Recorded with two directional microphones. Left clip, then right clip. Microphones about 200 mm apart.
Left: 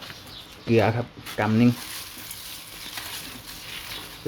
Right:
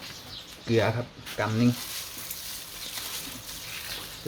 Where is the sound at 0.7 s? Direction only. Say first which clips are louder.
Left 4 dB; 20° left (ahead or behind).